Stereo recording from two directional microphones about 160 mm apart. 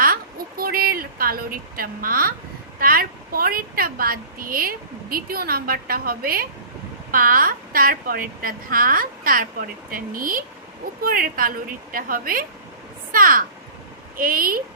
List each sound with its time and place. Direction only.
0.0 s a woman's voice: 65° right (ahead or behind)